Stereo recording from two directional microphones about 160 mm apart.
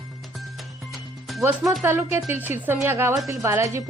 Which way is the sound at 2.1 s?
15° right (ahead or behind).